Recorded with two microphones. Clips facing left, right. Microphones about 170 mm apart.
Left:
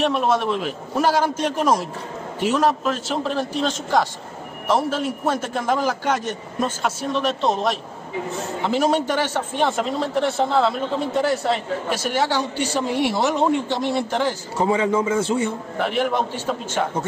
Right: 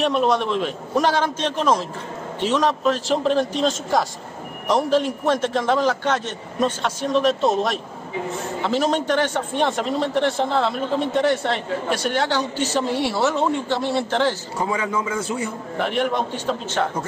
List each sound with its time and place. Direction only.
0.0 s a man's voice: centre (ahead or behind)
8.6 s a man's voice: 10° left (ahead or behind)
14.7 s a man's voice: 30° left (ahead or behind)
15.9 s a man's voice: 5° left (ahead or behind)